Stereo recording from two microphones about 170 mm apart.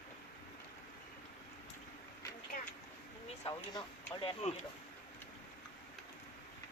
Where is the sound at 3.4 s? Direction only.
20° left (ahead or behind).